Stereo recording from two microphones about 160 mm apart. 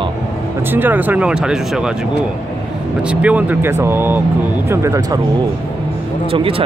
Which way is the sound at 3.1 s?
10° right (ahead or behind).